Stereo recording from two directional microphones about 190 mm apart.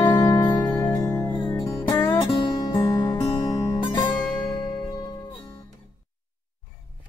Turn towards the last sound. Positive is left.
turn(degrees=20)  # may be behind; listen again after turning